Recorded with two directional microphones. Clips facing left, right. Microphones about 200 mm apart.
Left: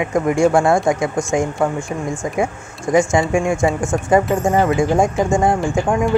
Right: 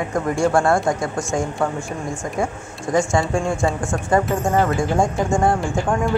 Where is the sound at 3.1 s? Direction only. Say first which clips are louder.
Left 4 dB; 15° left (ahead or behind).